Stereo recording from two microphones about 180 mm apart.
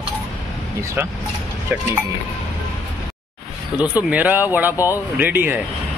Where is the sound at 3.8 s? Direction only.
10° right (ahead or behind).